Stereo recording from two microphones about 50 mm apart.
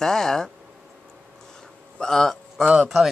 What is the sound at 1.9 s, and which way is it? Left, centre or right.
Speech, centre.